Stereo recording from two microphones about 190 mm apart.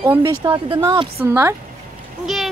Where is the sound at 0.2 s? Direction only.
20° right (ahead or behind).